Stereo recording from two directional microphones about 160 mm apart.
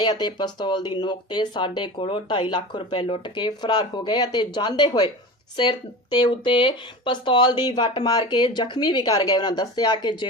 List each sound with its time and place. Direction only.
0.0 s speech: 25° left (ahead or behind)
6.1 s speech: 30° left (ahead or behind)